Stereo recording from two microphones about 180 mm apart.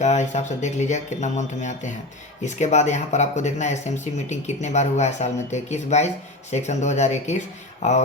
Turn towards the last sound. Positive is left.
turn(degrees=40)  # may be behind; listen again after turning